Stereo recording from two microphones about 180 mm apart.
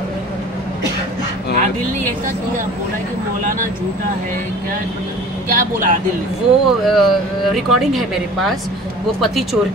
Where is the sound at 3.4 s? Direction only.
50° right (ahead or behind).